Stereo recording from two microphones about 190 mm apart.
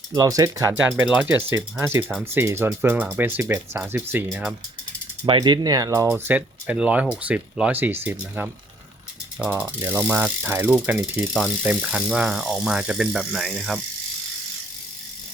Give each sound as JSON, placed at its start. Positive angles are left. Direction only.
{"t": 0.1, "sound": "speech", "side_deg": -15}
{"t": 5.2, "sound": "speech", "side_deg": -25}